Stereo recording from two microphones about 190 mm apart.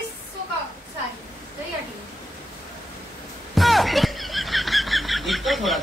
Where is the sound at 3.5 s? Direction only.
Centre (ahead or behind).